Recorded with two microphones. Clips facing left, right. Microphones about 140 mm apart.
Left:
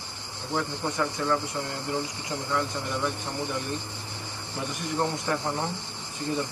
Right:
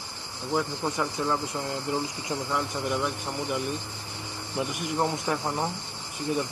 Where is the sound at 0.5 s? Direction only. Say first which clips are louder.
Right 2 dB; 20° right (ahead or behind).